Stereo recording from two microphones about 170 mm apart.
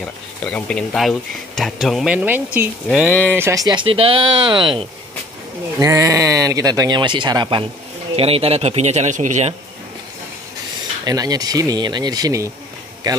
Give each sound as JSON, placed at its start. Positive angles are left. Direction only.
{"t": 0.0, "sound": "speech", "side_deg": 5}
{"t": 11.1, "sound": "speech", "side_deg": -20}